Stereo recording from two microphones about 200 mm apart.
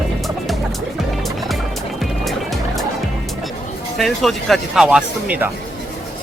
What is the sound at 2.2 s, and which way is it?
Music, centre (ahead or behind).